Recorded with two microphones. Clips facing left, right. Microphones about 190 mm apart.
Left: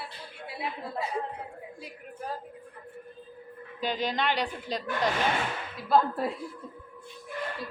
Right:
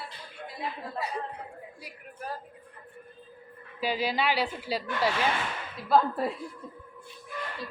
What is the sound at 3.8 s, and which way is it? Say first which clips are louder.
A woman's voice: right 1 dB; 10° right (ahead or behind).